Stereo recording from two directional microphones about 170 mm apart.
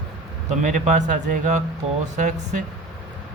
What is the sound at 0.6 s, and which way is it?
Speech, 45° right (ahead or behind).